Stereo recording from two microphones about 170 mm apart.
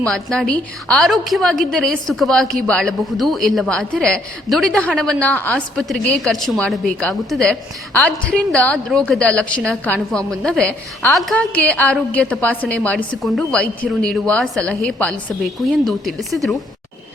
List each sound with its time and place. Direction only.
0.0 s a woman's voice: 5° left (ahead or behind)